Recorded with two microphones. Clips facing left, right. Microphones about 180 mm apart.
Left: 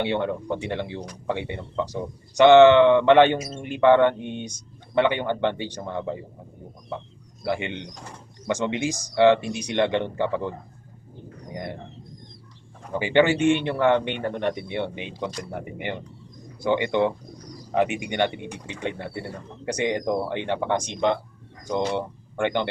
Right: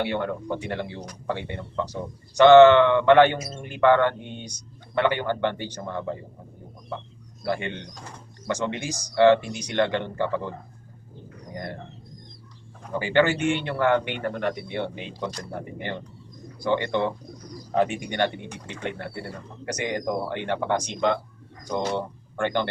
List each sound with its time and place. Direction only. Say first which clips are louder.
0.0 s speech: left 2 dB; 20° left (ahead or behind)
7.4 s speech: left 1 dB; 20° left (ahead or behind)
11.5 s speech: left 1 dB; 15° left (ahead or behind)
13.0 s speech: left 2 dB; 15° left (ahead or behind)